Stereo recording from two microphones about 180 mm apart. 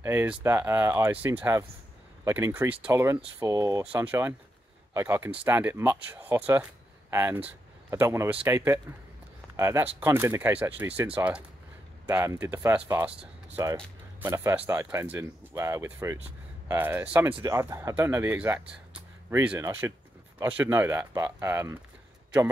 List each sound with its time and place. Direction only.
0.0 s speech: 10° right (ahead or behind)